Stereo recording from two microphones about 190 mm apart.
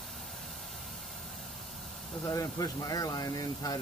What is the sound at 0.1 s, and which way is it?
Vehicle, centre (ahead or behind).